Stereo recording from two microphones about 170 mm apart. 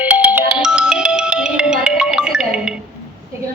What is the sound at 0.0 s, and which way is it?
Ringtone, 10° right (ahead or behind).